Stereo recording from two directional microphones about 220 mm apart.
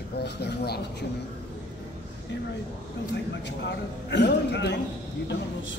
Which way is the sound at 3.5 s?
50° left (ahead or behind).